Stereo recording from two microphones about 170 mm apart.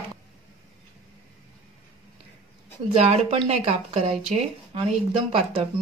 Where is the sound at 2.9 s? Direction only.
35° right (ahead or behind).